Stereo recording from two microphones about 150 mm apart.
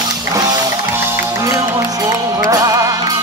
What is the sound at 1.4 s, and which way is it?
Music, 20° right (ahead or behind).